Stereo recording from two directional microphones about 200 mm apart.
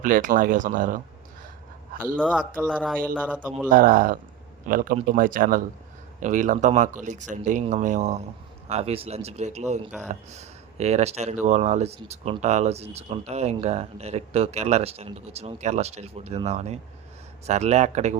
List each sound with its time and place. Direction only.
0.0 s speech: 45° right (ahead or behind)
2.1 s speech: 5° right (ahead or behind)
3.7 s speech: 45° right (ahead or behind)